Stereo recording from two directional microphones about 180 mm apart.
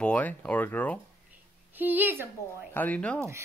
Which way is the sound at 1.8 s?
10° right (ahead or behind).